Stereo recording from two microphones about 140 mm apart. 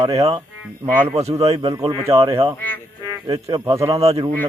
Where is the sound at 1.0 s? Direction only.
50° right (ahead or behind).